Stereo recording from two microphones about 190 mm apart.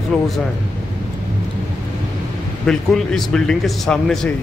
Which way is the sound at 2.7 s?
5° left (ahead or behind).